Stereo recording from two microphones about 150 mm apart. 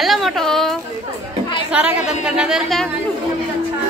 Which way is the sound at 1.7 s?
10° right (ahead or behind).